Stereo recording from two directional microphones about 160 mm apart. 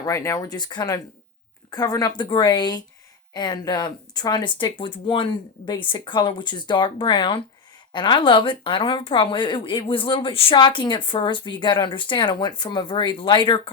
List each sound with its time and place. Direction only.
0.0 s speech: 20° left (ahead or behind)